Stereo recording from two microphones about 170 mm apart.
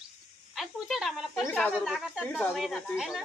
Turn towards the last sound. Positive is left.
turn(degrees=0)  # may be behind; listen again after turning